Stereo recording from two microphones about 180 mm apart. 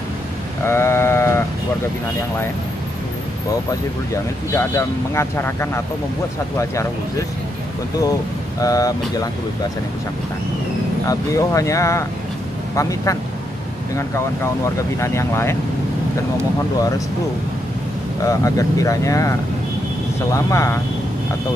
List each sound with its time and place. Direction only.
0.7 s sheep: 15° left (ahead or behind)
4.1 s speech: 15° left (ahead or behind)
11.1 s speech: 20° left (ahead or behind)
18.2 s speech: 20° left (ahead or behind)